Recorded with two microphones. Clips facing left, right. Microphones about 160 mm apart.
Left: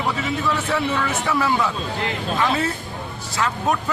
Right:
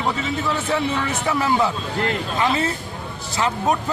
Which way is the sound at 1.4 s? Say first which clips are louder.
Right 2 dB; 25° right (ahead or behind).